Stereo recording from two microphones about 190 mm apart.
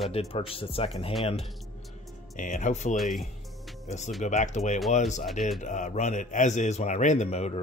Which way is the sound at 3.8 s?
40° left (ahead or behind).